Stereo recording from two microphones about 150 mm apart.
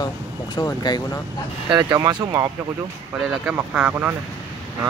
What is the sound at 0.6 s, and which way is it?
Speech, 25° left (ahead or behind).